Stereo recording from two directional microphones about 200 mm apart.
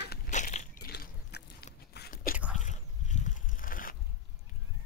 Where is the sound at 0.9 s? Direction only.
55° left (ahead or behind).